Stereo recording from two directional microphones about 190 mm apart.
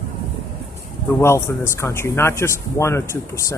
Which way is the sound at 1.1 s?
15° left (ahead or behind).